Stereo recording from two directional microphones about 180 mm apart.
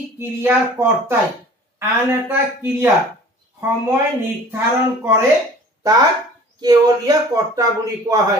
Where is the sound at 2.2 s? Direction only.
10° right (ahead or behind).